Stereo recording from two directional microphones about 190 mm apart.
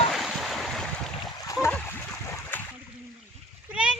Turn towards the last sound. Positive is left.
turn(degrees=-5)  # may be behind; listen again after turning